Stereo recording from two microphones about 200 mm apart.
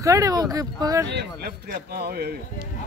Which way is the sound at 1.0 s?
55° right (ahead or behind).